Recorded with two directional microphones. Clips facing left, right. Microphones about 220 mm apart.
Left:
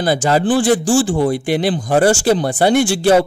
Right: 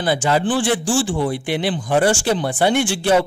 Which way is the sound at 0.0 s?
40° left (ahead or behind).